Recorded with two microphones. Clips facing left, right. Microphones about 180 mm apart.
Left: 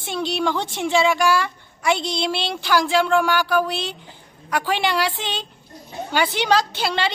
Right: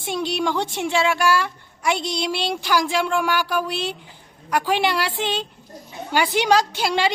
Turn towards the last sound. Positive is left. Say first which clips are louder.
# right 2 dB
turn(degrees=-10)  # may be behind; listen again after turning